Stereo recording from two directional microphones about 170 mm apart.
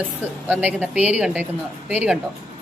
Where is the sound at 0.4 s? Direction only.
10° right (ahead or behind).